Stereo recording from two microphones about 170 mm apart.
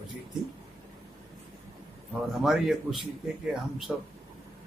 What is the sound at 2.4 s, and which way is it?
Speech, centre (ahead or behind).